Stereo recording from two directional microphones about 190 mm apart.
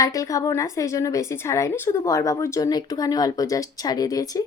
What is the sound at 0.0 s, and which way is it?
A woman's voice, 15° left (ahead or behind).